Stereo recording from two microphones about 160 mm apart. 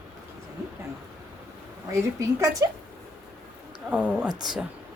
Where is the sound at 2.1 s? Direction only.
20° right (ahead or behind).